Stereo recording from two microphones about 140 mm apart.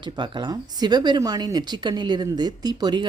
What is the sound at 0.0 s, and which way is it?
Speech, 35° right (ahead or behind).